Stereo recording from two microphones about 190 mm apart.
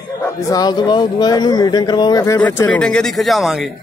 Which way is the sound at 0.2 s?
20° left (ahead or behind).